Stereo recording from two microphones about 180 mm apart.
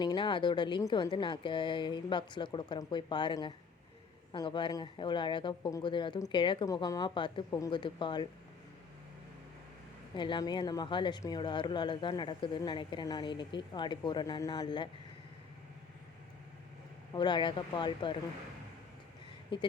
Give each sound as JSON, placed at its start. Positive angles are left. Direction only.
{"t": 0.0, "sound": "speech", "side_deg": 25}
{"t": 10.2, "sound": "speech", "side_deg": 25}
{"t": 17.1, "sound": "speech", "side_deg": 25}